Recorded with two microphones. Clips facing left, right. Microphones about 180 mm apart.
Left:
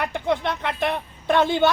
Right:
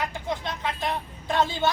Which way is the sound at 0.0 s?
65° left (ahead or behind).